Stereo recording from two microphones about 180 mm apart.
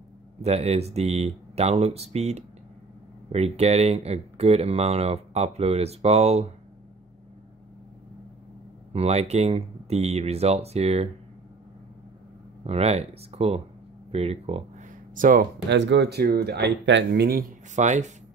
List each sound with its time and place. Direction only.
0.4 s speech: 35° right (ahead or behind)
8.9 s speech: 35° right (ahead or behind)
12.6 s speech: 35° right (ahead or behind)
15.1 s speech: 50° right (ahead or behind)
15.7 s speech: 80° right; by 17.5 s 60° right (ahead or behind)
17.7 s speech: 40° right (ahead or behind)